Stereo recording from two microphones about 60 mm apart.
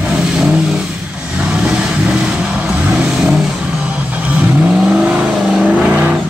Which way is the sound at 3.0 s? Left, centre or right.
Centre.